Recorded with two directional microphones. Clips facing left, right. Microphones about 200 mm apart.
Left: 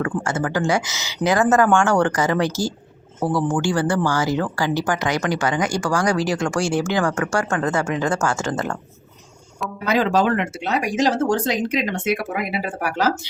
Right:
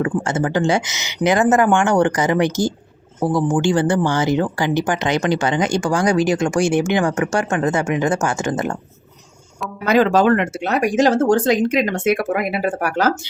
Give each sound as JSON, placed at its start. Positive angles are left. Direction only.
{"t": 0.0, "sound": "speech", "side_deg": -20}
{"t": 9.8, "sound": "speech", "side_deg": -50}